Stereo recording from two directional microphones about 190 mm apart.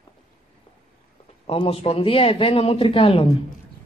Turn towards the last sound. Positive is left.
turn(degrees=30)  # may be behind; listen again after turning